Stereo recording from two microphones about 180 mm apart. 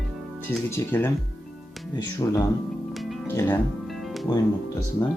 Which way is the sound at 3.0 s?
Centre (ahead or behind).